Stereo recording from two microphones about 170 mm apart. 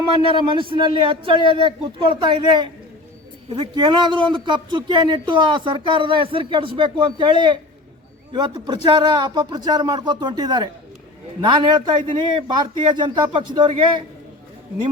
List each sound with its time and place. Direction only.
0.3 s speech: 30° right (ahead or behind)